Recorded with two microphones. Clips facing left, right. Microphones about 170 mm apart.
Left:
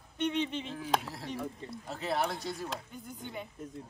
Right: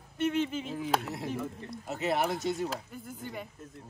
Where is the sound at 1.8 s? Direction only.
20° right (ahead or behind).